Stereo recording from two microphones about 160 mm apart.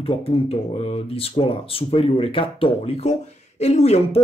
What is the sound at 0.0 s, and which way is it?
Speech, 35° left (ahead or behind).